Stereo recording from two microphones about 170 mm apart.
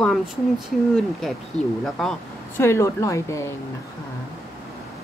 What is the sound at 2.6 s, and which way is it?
Speech, 15° left (ahead or behind).